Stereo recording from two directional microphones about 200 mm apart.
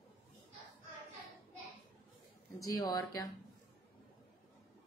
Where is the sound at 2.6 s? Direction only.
20° left (ahead or behind).